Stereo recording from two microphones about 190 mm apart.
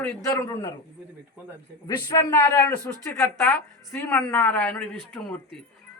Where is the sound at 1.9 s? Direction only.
20° left (ahead or behind).